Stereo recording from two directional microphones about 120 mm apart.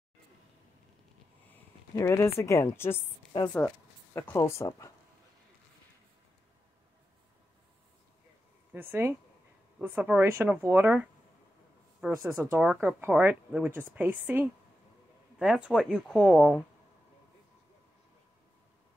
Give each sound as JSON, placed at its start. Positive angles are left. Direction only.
{"t": 2.0, "sound": "speech", "side_deg": 25}
{"t": 8.7, "sound": "speech", "side_deg": -20}
{"t": 12.2, "sound": "speech", "side_deg": -15}
{"t": 15.3, "sound": "speech", "side_deg": -5}